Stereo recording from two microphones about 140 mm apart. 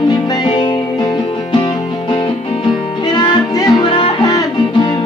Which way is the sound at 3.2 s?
30° left (ahead or behind).